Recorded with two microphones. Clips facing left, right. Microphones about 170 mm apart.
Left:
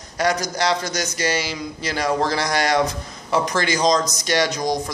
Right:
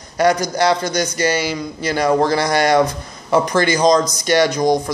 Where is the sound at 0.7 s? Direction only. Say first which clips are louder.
Right 5 dB; 55° right (ahead or behind).